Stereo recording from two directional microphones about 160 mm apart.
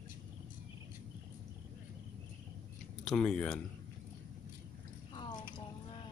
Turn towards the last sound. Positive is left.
turn(degrees=30)  # may be behind; listen again after turning